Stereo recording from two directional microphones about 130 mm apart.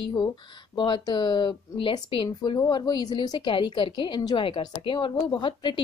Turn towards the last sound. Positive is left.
turn(degrees=35)  # may be behind; listen again after turning